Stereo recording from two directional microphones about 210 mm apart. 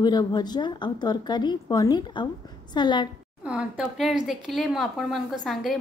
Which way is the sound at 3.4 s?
5° right (ahead or behind).